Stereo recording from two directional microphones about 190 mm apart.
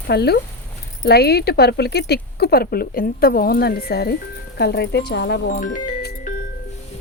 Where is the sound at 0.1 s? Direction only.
60° left (ahead or behind).